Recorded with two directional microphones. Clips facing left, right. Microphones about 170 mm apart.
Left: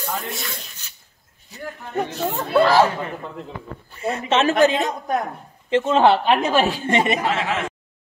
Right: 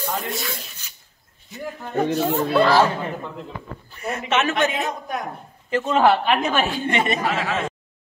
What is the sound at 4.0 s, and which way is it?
A woman's voice, 30° left (ahead or behind).